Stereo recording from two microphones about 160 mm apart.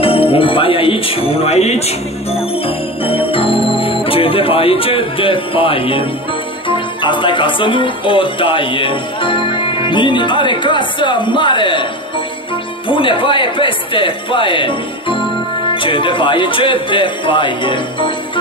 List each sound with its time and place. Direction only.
0.0 s speech: 35° left (ahead or behind)
2.3 s music: 35° left (ahead or behind)
6.7 s speech: 30° left (ahead or behind)
12.8 s speech: 30° left (ahead or behind)